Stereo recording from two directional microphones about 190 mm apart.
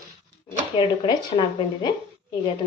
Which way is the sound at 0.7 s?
25° left (ahead or behind).